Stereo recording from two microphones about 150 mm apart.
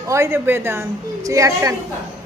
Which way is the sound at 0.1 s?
15° right (ahead or behind).